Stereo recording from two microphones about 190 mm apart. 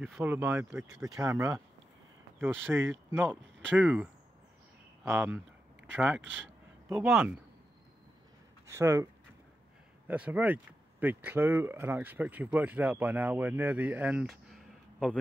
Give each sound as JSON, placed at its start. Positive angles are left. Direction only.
{"t": 0.0, "sound": "speech", "side_deg": -10}
{"t": 8.6, "sound": "speech", "side_deg": -15}
{"t": 14.5, "sound": "a sound", "side_deg": 5}